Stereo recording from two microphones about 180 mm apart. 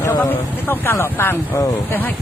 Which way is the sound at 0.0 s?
20° left (ahead or behind).